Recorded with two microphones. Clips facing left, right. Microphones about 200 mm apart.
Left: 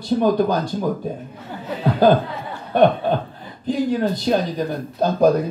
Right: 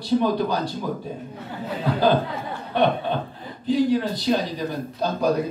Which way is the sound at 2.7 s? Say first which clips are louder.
Left 6 dB; 45° left (ahead or behind).